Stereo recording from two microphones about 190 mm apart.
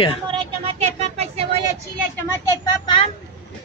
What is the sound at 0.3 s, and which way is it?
Vehicle, 30° right (ahead or behind).